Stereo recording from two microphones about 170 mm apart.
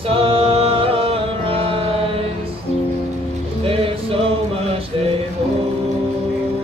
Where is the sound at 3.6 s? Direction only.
35° right (ahead or behind).